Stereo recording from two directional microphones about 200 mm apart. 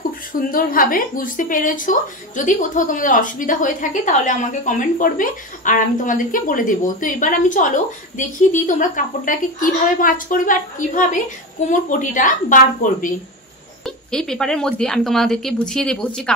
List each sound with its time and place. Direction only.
0.3 s speech: 45° left (ahead or behind)
13.8 s speech: 5° left (ahead or behind)